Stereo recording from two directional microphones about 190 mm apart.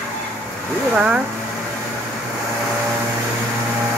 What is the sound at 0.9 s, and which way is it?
Speech, 5° right (ahead or behind).